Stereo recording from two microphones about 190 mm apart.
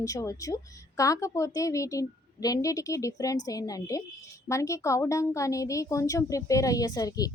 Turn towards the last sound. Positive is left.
turn(degrees=20)  # may be behind; listen again after turning